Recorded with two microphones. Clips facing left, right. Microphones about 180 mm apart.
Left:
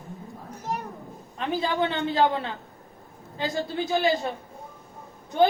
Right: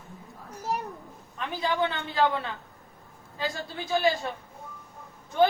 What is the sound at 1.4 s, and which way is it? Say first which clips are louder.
A man's voice: left 2 dB; 30° left (ahead or behind).